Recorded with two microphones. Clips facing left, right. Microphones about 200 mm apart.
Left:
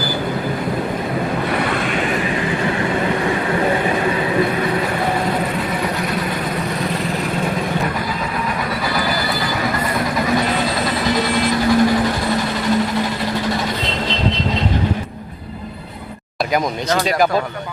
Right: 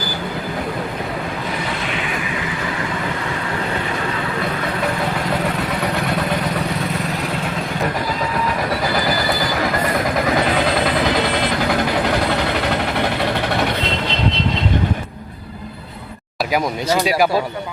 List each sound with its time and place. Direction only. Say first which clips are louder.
11.7 s vehicle: left 5 dB; 65° right (ahead or behind)
16.5 s speech: even; 5° right (ahead or behind)